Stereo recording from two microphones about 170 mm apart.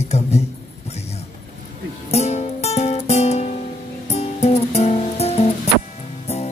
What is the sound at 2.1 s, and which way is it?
Music, 40° left (ahead or behind).